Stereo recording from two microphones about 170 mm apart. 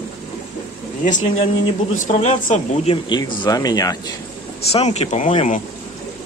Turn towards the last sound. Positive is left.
turn(degrees=40)  # may be behind; listen again after turning